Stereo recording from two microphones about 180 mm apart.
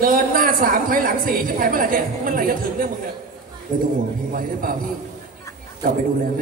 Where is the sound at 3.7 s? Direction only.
50° right (ahead or behind).